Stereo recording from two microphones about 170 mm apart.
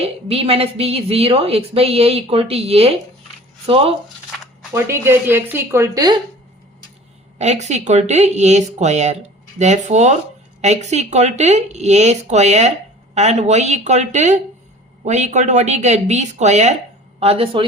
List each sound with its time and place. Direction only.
0.0 s a woman's voice: 35° right (ahead or behind)
4.7 s speech: 15° right (ahead or behind)
7.3 s a woman's voice: 40° right (ahead or behind)